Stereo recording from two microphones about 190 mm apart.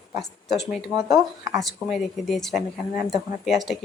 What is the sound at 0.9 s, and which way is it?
Speech, 20° right (ahead or behind).